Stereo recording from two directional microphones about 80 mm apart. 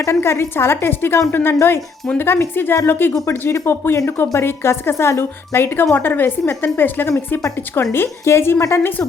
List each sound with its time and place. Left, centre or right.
0.0 s a woman's voice: left
3.2 s a woman's voice: left